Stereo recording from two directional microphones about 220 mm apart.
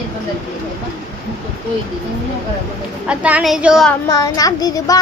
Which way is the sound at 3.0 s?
5° right (ahead or behind).